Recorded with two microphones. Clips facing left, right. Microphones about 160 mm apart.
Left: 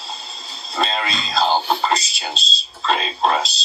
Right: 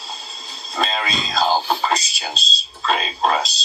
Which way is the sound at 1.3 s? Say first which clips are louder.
Left 1 dB; centre (ahead or behind).